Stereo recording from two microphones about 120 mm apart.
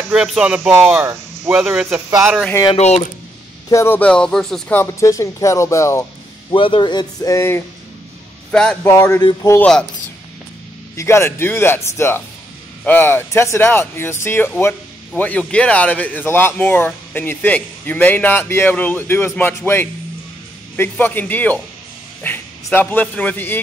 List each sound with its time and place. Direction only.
0.1 s speech: 5° right (ahead or behind)
2.0 s speech: 20° right (ahead or behind)
2.7 s speech: 65° left (ahead or behind)
3.7 s speech: 20° left (ahead or behind)
4.7 s speech: 25° left (ahead or behind)
6.5 s speech: 45° left (ahead or behind); by 7.6 s 25° left (ahead or behind)
8.5 s speech: 10° left (ahead or behind)
8.9 s speech: 20° left (ahead or behind)
9.6 s speech: 5° left (ahead or behind)
11.0 s speech: 20° left (ahead or behind)
21.0 s speech: 15° left (ahead or behind)